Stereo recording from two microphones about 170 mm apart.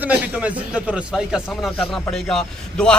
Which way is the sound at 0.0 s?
10° right (ahead or behind).